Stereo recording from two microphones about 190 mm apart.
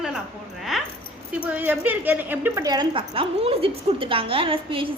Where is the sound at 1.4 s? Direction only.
10° right (ahead or behind).